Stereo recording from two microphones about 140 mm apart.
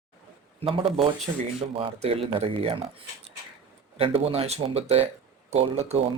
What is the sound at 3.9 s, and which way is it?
Speech, 45° right (ahead or behind).